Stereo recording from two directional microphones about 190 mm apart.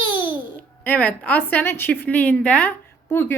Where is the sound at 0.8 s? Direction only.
10° left (ahead or behind).